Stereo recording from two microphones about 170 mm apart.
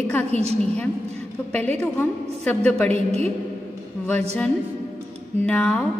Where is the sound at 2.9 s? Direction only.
40° right (ahead or behind).